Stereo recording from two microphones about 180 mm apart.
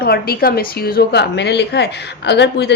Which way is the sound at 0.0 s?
60° left (ahead or behind).